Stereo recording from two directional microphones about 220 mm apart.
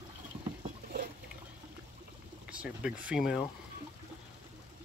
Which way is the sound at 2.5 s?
5° right (ahead or behind).